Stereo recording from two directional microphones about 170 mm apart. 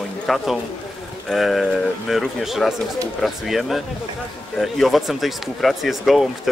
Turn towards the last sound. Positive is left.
turn(degrees=0)  # may be behind; listen again after turning